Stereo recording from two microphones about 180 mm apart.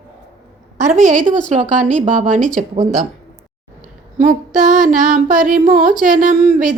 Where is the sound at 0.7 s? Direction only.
45° right (ahead or behind).